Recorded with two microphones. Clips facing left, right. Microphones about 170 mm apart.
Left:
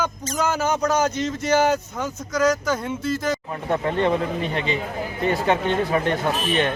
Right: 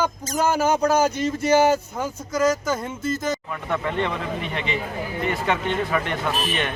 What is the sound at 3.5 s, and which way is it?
Speech, 35° left (ahead or behind).